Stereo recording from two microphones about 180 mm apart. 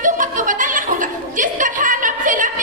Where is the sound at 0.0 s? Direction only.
45° right (ahead or behind).